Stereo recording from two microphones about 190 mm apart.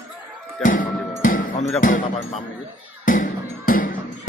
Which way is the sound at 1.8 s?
45° left (ahead or behind).